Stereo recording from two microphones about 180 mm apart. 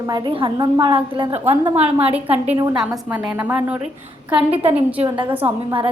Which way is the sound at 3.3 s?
10° right (ahead or behind).